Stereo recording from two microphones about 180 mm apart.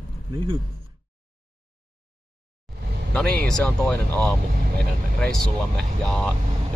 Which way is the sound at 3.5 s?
5° left (ahead or behind).